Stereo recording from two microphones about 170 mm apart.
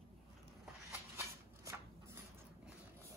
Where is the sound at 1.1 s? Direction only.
15° right (ahead or behind).